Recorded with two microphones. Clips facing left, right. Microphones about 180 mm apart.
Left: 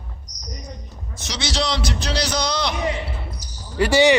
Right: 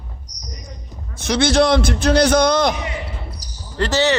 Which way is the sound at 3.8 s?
10° left (ahead or behind).